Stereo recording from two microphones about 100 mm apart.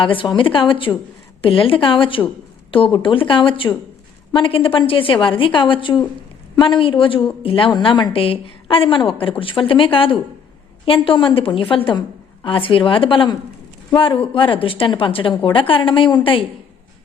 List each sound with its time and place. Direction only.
0.0 s a woman's voice: 60° left (ahead or behind)
8.1 s a woman's voice: 65° left (ahead or behind)
14.3 s a woman's voice: 60° left (ahead or behind)